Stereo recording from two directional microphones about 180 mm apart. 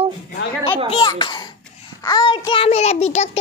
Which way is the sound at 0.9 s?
30° left (ahead or behind).